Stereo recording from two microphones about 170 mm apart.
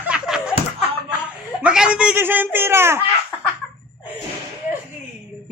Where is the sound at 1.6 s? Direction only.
5° right (ahead or behind).